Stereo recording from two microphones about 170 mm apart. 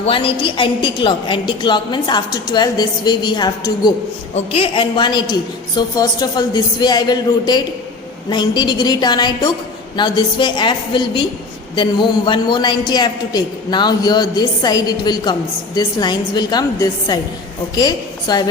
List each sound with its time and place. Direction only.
0.0 s a man's voice: 30° left (ahead or behind)
4.4 s a man's voice: 35° left (ahead or behind)